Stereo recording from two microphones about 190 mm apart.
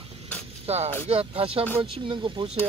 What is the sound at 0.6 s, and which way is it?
Speech, 35° right (ahead or behind).